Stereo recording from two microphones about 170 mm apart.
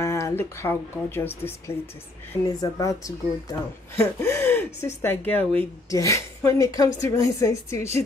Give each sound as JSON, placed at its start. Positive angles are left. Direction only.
{"t": 0.0, "sound": "speech", "side_deg": 15}
{"t": 2.4, "sound": "a woman's voice", "side_deg": 20}